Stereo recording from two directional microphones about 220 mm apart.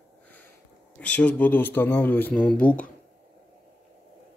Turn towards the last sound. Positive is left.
turn(degrees=5)  # may be behind; listen again after turning